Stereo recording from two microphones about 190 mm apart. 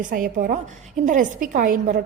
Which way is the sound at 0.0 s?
45° right (ahead or behind).